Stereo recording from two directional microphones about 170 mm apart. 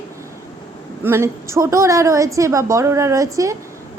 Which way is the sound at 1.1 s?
15° right (ahead or behind).